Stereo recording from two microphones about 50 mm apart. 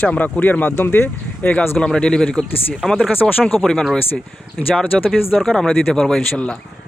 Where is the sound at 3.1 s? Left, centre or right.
Left.